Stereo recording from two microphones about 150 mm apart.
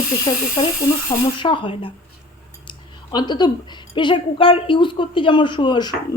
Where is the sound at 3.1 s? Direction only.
30° left (ahead or behind).